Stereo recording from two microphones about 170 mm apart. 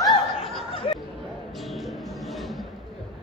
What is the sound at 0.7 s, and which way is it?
Chatter, 35° left (ahead or behind).